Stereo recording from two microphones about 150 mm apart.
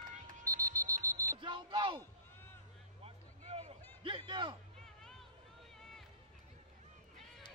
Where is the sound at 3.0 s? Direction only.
45° right (ahead or behind).